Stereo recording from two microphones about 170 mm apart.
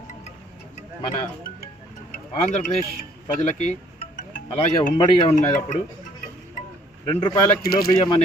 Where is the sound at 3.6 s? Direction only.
50° left (ahead or behind).